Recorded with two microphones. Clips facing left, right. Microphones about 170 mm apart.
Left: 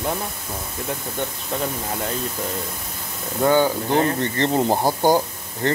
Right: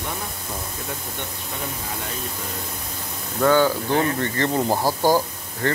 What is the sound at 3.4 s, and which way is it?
Speech, 20° left (ahead or behind).